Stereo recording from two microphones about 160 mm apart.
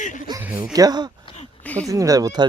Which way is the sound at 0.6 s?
25° right (ahead or behind).